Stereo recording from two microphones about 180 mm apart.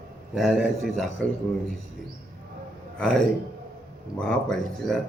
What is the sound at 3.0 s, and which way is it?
Speech, 5° left (ahead or behind).